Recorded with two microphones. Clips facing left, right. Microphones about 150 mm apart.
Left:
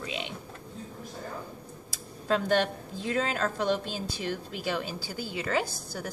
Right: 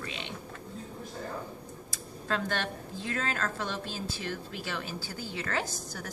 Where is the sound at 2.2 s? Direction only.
15° left (ahead or behind).